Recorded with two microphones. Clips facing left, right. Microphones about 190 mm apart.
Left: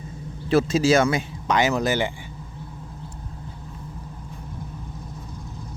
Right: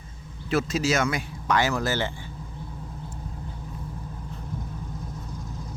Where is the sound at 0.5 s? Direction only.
30° left (ahead or behind).